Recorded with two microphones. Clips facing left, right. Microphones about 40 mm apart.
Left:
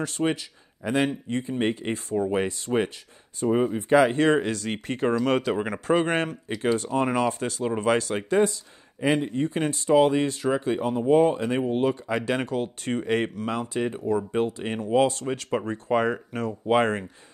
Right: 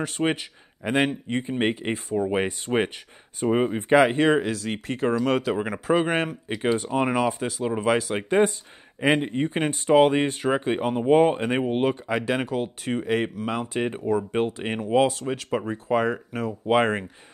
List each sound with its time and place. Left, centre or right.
0.0 s speech: right
2.6 s speech: right
4.2 s speech: centre
8.3 s speech: right
12.1 s speech: centre
15.0 s speech: centre
16.6 s speech: centre